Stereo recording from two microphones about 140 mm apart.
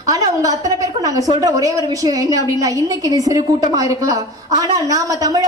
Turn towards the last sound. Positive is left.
turn(degrees=-25)  # may be behind; listen again after turning